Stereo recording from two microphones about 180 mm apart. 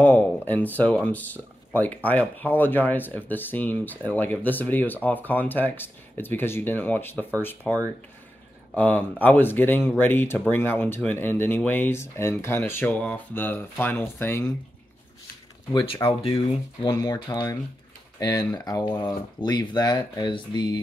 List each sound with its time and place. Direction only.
0.0 s speech: 10° left (ahead or behind)
15.7 s speech: 30° left (ahead or behind)